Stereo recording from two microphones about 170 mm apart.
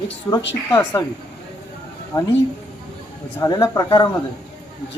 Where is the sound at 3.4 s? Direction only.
20° left (ahead or behind).